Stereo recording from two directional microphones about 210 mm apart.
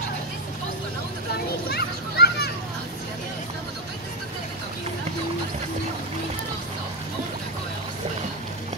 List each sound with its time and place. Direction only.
1.7 s children playing: 50° left (ahead or behind)